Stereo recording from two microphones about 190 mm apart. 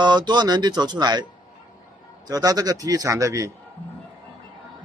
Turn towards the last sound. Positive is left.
turn(degrees=-15)  # may be behind; listen again after turning